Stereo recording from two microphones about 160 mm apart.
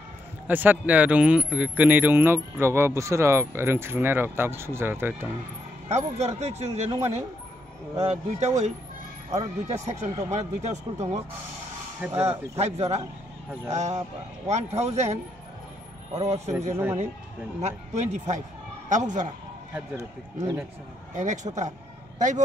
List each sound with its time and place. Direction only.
0.5 s speech: 10° right (ahead or behind)
5.9 s speech: 45° right (ahead or behind)
12.0 s speech: 10° right (ahead or behind)
12.5 s speech: 40° right (ahead or behind)
16.2 s speech: 45° right (ahead or behind)
16.7 s speech: 15° right (ahead or behind)
17.6 s speech: 45° right (ahead or behind)
20.0 s speech: 15° right (ahead or behind)
21.1 s speech: 50° right (ahead or behind)